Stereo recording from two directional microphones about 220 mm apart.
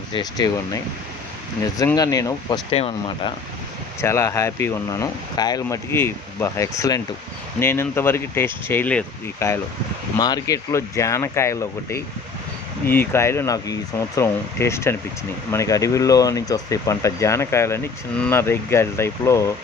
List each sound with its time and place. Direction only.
0.1 s speech: 20° left (ahead or behind)
4.0 s speech: 10° left (ahead or behind)